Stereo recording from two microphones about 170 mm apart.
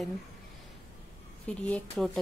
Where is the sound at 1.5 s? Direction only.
5° left (ahead or behind).